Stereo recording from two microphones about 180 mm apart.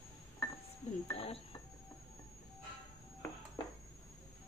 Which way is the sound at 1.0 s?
35° left (ahead or behind).